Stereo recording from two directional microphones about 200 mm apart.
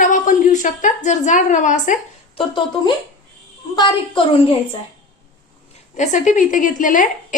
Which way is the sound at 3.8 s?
25° left (ahead or behind).